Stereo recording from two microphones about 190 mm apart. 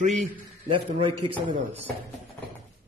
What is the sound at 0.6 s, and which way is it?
Speech, 30° right (ahead or behind).